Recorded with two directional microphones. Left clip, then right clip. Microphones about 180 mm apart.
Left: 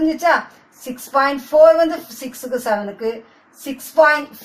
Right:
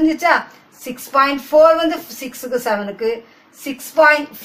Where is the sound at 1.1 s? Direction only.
20° right (ahead or behind).